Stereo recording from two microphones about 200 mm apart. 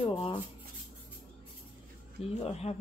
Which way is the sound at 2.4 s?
30° left (ahead or behind).